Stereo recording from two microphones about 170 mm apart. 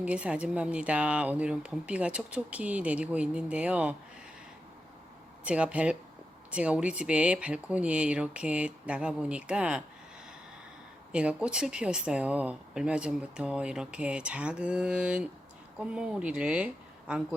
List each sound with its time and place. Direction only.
0.0 s speech: 5° right (ahead or behind)
5.5 s speech: 5° right (ahead or behind)
11.1 s speech: 5° right (ahead or behind)